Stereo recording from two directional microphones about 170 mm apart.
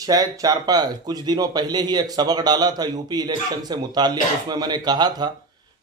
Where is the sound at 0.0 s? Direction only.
20° right (ahead or behind).